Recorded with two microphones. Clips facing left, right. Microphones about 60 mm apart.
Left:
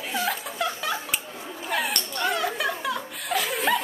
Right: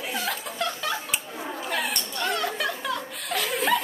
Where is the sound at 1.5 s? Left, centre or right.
Centre.